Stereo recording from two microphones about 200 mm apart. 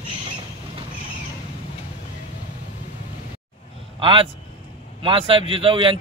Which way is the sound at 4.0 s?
25° right (ahead or behind).